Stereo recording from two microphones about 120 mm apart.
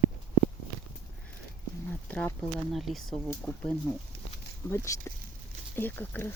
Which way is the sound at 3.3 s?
15° left (ahead or behind).